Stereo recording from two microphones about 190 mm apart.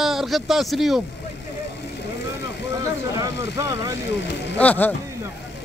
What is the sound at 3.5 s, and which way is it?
Speech, 15° right (ahead or behind).